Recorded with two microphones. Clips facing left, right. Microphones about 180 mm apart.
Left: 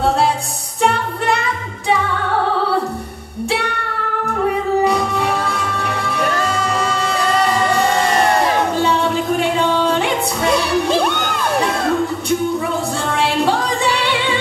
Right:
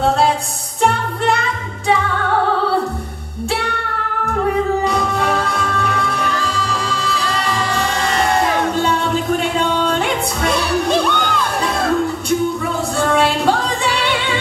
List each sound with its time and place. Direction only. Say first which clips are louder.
6.3 s music: left 3 dB; 50° left (ahead or behind)
11.1 s children shouting: right 2 dB; 50° left (ahead or behind)